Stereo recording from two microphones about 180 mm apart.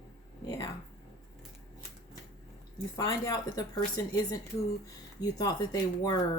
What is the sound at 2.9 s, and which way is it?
Speech, 20° left (ahead or behind).